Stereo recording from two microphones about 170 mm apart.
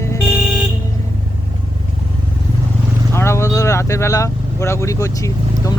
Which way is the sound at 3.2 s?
15° left (ahead or behind).